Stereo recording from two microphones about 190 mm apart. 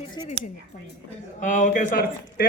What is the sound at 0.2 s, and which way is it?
Speech, 25° left (ahead or behind).